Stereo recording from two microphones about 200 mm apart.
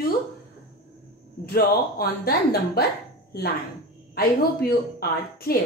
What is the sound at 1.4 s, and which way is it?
A woman's voice, 50° left (ahead or behind).